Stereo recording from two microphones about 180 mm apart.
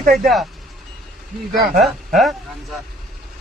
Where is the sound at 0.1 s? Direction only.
Centre (ahead or behind).